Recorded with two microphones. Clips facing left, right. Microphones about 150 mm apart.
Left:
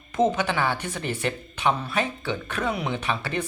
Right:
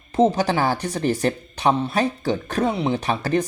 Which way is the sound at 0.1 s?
35° right (ahead or behind).